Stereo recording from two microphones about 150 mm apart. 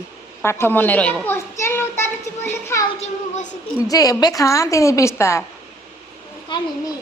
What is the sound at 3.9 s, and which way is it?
A woman's voice, 25° left (ahead or behind).